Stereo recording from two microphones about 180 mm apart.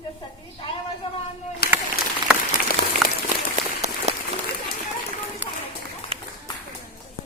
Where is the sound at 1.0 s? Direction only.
30° left (ahead or behind).